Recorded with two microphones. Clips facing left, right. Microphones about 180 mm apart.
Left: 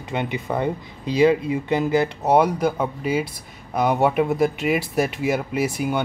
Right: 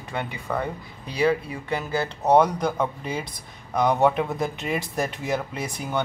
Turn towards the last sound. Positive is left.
turn(degrees=10)  # may be behind; listen again after turning